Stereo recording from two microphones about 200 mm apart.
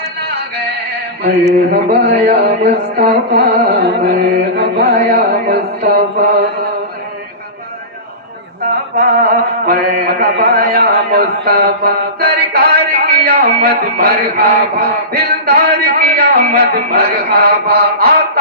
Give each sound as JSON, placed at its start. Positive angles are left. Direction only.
{"t": 0.2, "sound": "music", "side_deg": -55}
{"t": 1.7, "sound": "a sound", "side_deg": -55}
{"t": 8.6, "sound": "mantra", "side_deg": -55}